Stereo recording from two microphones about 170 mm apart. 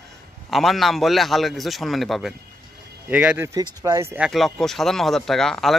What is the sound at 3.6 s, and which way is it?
Speech, 20° right (ahead or behind).